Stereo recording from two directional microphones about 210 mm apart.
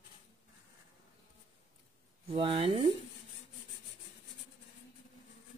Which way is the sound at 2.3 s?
25° right (ahead or behind).